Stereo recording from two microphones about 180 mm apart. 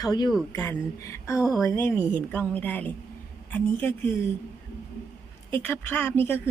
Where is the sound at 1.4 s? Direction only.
5° right (ahead or behind).